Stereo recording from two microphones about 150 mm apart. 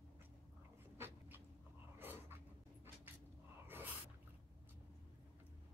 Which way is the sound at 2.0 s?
15° right (ahead or behind).